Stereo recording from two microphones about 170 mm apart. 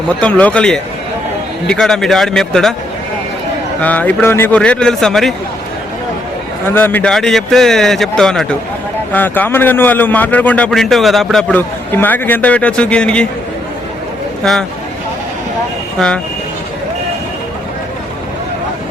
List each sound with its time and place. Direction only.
0.2 s a man's voice: 10° left (ahead or behind)
3.8 s a man's voice: 10° left (ahead or behind)
6.7 s a man's voice: 10° left (ahead or behind)
14.4 s a man's voice: 5° left (ahead or behind)
16.0 s a man's voice: 5° left (ahead or behind)